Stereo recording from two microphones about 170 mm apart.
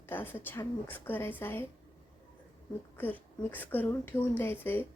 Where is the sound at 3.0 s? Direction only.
10° left (ahead or behind).